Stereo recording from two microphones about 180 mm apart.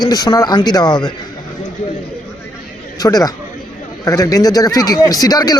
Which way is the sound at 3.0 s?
20° left (ahead or behind).